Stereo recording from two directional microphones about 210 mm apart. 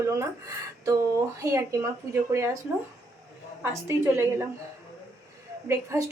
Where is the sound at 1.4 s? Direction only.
15° right (ahead or behind).